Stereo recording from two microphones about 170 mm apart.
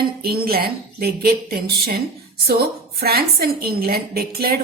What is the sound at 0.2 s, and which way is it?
A woman's voice, 65° right (ahead or behind).